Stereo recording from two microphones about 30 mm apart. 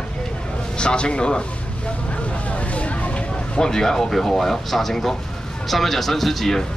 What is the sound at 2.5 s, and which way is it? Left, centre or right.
Vehicle, left.